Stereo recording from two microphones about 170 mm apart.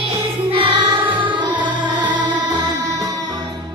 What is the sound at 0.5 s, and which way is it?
Music, 30° right (ahead or behind).